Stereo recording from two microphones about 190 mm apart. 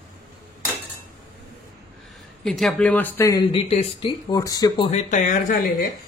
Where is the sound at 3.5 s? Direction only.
30° left (ahead or behind).